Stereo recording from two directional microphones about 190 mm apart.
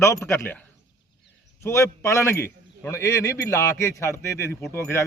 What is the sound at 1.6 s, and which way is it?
Speech, 15° left (ahead or behind).